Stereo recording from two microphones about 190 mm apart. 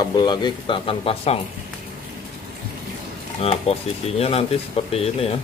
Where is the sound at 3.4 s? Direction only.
30° left (ahead or behind).